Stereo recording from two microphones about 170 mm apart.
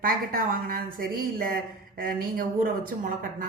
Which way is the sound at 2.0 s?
60° right (ahead or behind).